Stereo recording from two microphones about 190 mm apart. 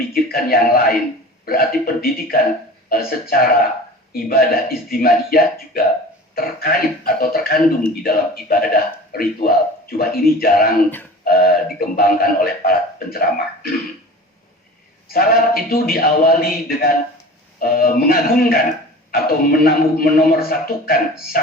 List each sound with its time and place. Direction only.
0.1 s speech: 50° left (ahead or behind)
15.0 s speech: 50° left (ahead or behind)